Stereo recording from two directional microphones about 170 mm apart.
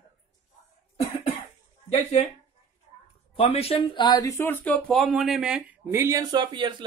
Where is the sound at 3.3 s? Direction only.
35° left (ahead or behind); by 5.6 s 5° right (ahead or behind).